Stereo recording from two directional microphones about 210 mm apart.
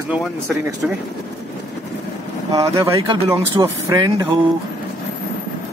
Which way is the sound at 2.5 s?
15° right (ahead or behind).